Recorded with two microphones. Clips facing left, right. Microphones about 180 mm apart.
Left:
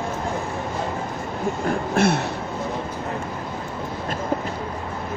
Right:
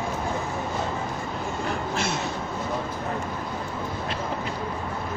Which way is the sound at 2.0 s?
60° left (ahead or behind).